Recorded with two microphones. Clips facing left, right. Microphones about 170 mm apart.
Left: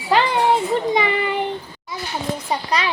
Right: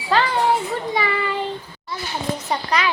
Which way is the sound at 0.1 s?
20° left (ahead or behind).